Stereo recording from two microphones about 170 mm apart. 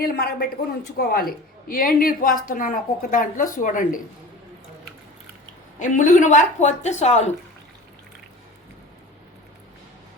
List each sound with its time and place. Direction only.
0.0 s a woman's voice: 60° left (ahead or behind)
5.8 s a woman's voice: 50° left (ahead or behind)